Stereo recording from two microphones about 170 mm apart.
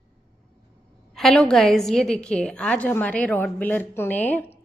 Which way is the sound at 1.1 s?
Centre (ahead or behind).